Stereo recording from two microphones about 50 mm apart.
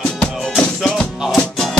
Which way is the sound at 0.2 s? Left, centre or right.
Centre.